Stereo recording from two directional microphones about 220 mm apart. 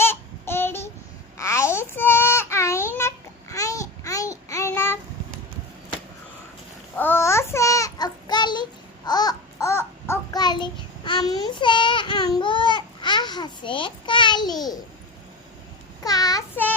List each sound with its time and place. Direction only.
0.0 s a sound: 10° left (ahead or behind)
6.9 s child singing: 10° left (ahead or behind)
9.0 s babbling: 20° left (ahead or behind)
16.0 s child singing: 15° left (ahead or behind)